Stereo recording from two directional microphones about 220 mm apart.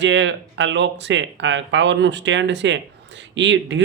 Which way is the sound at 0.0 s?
55° right (ahead or behind).